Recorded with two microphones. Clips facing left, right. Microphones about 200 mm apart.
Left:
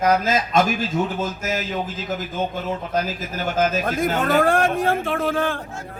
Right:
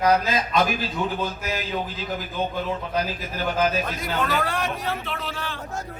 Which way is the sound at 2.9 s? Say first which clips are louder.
Left 2 dB; 45° left (ahead or behind).